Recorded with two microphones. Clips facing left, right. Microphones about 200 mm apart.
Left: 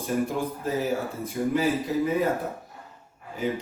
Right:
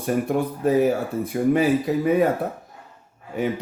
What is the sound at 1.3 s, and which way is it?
Speech, 75° right (ahead or behind).